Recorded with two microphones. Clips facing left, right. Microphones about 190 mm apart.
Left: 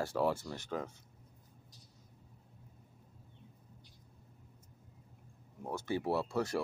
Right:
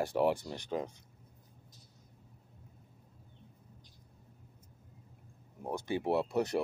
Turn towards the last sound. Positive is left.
turn(degrees=-20)  # may be behind; listen again after turning